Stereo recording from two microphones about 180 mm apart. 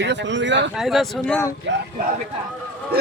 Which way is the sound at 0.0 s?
80° right.